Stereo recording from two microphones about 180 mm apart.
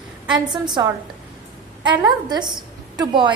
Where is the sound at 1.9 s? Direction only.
25° right (ahead or behind).